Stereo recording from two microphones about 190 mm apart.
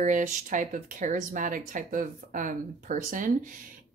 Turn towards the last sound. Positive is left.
turn(degrees=-45)  # may be behind; listen again after turning